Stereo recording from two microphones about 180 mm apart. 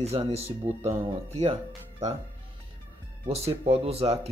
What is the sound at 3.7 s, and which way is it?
Speech, 35° right (ahead or behind).